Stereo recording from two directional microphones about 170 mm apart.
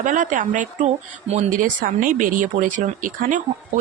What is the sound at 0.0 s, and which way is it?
Speech, 50° right (ahead or behind).